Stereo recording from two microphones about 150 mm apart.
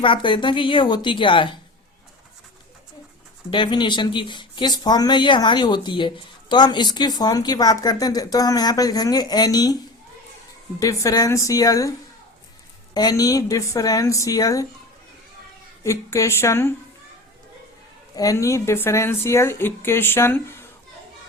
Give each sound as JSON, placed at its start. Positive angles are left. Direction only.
{"t": 0.0, "sound": "a woman's voice", "side_deg": 35}
{"t": 3.5, "sound": "speech", "side_deg": 30}
{"t": 10.8, "sound": "speech", "side_deg": 25}
{"t": 15.8, "sound": "speech", "side_deg": 20}
{"t": 18.2, "sound": "speech", "side_deg": 20}